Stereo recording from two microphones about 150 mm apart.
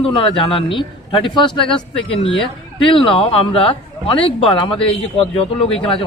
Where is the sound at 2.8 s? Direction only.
35° left (ahead or behind).